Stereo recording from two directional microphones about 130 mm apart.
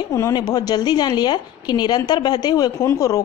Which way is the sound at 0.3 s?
35° left (ahead or behind).